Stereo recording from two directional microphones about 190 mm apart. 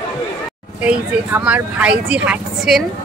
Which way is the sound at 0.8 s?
5° right (ahead or behind).